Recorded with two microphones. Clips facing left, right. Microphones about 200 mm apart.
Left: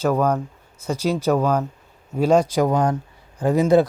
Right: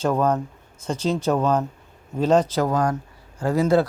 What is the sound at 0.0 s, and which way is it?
Speech, 10° left (ahead or behind).